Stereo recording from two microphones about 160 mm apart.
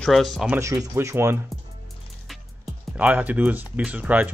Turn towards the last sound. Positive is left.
turn(degrees=-10)  # may be behind; listen again after turning